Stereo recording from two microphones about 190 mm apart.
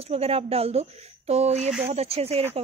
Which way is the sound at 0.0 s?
35° right (ahead or behind).